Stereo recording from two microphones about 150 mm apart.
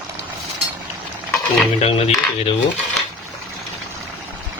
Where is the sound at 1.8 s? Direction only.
40° left (ahead or behind).